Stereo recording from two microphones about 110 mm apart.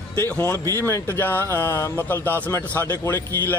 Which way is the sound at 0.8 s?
20° left (ahead or behind).